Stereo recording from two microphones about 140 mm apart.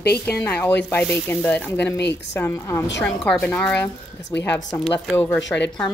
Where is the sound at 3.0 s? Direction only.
5° left (ahead or behind).